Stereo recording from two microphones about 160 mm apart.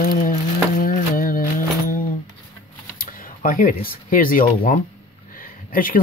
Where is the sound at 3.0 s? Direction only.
60° left (ahead or behind).